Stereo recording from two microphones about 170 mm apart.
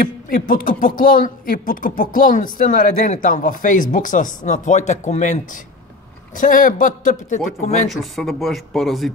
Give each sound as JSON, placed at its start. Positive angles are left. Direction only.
{"t": 0.0, "sound": "speech", "side_deg": 55}
{"t": 7.9, "sound": "speech", "side_deg": 0}